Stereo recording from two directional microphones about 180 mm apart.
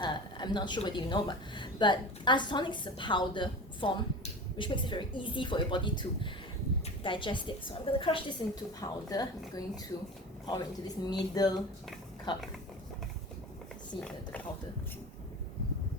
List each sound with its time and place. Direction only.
0.0 s a woman's voice: 25° left (ahead or behind)